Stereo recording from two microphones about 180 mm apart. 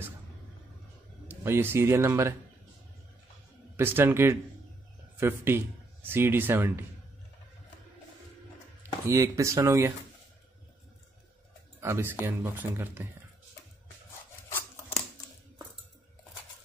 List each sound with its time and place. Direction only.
1.2 s speech: 10° right (ahead or behind)
3.7 s speech: 10° right (ahead or behind)
9.0 s speech: 15° right (ahead or behind)
11.8 s speech: 15° right (ahead or behind)